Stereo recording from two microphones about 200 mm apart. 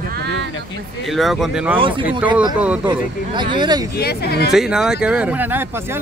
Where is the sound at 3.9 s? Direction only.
50° left (ahead or behind).